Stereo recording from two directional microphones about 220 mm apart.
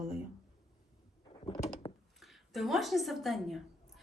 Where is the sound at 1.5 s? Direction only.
20° left (ahead or behind).